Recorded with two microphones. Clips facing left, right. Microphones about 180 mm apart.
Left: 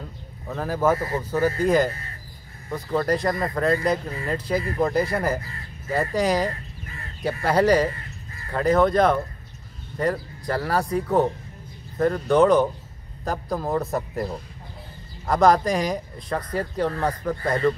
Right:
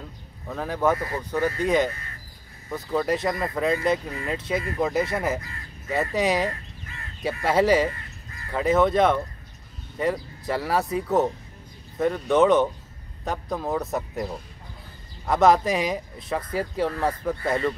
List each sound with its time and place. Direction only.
0.5 s speech: centre (ahead or behind)
0.9 s speech: 25° left (ahead or behind)
1.3 s speech: 5° left (ahead or behind)